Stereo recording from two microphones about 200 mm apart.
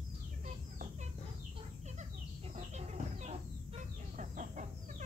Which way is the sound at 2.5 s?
35° right (ahead or behind).